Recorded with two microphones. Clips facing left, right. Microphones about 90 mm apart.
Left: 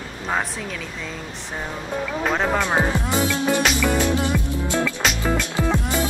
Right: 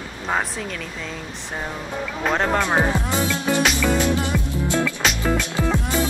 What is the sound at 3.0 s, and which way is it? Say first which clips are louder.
Music: left 1 dB; 20° left (ahead or behind).